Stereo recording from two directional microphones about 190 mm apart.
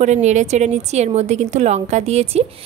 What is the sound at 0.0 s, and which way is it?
A woman's voice, 40° right (ahead or behind).